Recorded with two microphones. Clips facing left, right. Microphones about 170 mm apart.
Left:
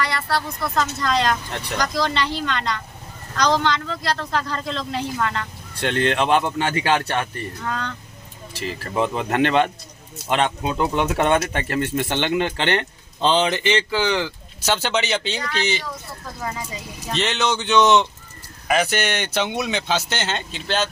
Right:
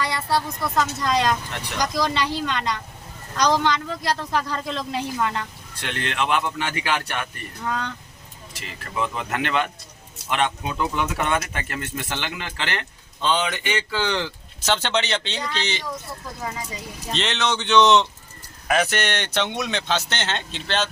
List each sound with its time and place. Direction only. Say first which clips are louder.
0.0 s speech: even; 15° right (ahead or behind)
6.1 s speech: left 3 dB; 30° left (ahead or behind)
7.6 s speech: right 2 dB; 10° right (ahead or behind)
8.5 s speech: left 6 dB; 30° left (ahead or behind)
13.9 s speech: left 3 dB; 10° left (ahead or behind)
17.2 s speech: left 2 dB; 5° left (ahead or behind)